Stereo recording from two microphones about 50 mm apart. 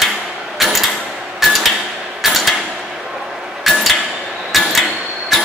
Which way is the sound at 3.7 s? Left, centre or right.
Centre.